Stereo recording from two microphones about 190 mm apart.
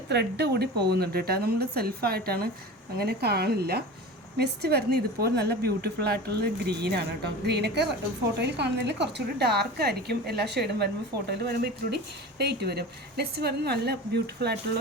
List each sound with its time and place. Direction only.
0.1 s speech: 60° right (ahead or behind)